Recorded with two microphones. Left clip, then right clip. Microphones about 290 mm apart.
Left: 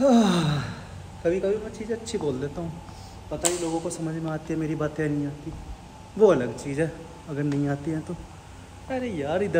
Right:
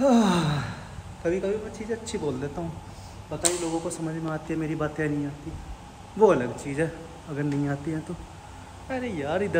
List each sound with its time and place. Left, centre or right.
0.0 s gasp: centre
1.2 s speech: centre